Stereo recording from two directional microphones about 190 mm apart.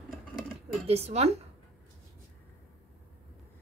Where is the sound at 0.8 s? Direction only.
35° right (ahead or behind).